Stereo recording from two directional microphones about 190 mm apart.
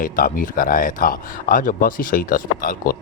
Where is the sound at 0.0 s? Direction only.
45° left (ahead or behind).